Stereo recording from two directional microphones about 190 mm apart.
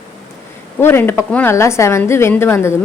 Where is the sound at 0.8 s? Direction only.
10° left (ahead or behind).